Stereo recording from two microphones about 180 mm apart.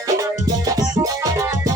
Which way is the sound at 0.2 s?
20° right (ahead or behind).